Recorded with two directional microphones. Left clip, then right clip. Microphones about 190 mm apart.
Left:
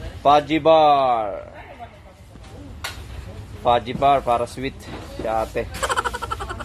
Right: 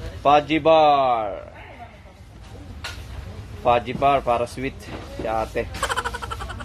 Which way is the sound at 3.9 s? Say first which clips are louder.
Left 2 dB; 5° left (ahead or behind).